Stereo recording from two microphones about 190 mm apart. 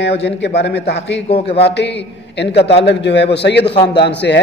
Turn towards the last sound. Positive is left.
turn(degrees=65)  # may be behind; listen again after turning